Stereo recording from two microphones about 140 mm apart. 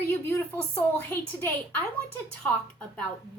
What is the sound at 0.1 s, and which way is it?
A woman's voice, 20° left (ahead or behind).